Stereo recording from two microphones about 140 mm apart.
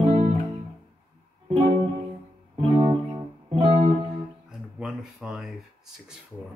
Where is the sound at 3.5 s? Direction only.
45° right (ahead or behind).